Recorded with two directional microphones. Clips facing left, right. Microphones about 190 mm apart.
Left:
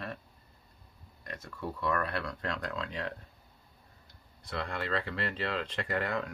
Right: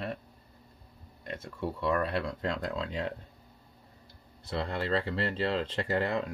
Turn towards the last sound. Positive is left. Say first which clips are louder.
# right 3 dB
turn(degrees=-25)  # may be behind; listen again after turning